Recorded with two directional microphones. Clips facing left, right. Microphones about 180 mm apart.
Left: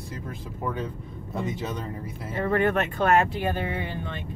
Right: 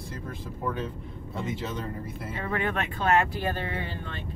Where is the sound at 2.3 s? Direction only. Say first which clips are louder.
Left 7 dB; 45° left (ahead or behind).